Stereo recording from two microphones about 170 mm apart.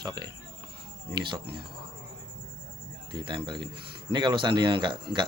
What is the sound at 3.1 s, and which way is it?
Speech, 30° right (ahead or behind).